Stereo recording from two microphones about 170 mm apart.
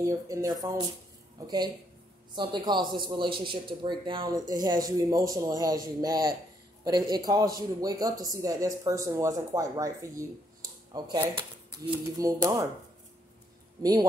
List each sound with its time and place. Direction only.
0.0 s a man's voice: 20° right (ahead or behind)